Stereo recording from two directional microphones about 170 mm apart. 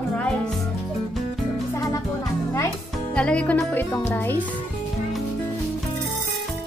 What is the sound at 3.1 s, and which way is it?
Speech, 5° left (ahead or behind).